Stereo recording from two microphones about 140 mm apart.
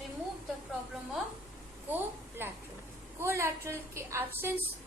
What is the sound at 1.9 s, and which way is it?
A woman's voice, 15° right (ahead or behind).